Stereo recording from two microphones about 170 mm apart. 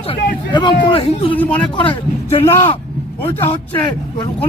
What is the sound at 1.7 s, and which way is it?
Speech, 30° left (ahead or behind).